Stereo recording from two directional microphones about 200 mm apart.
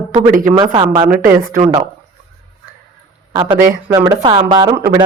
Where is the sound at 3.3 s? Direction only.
20° right (ahead or behind).